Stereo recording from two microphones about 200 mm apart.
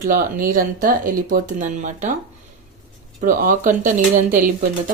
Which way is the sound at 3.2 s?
45° right (ahead or behind).